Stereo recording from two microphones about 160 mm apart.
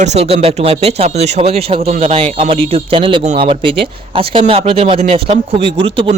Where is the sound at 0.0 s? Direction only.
45° right (ahead or behind).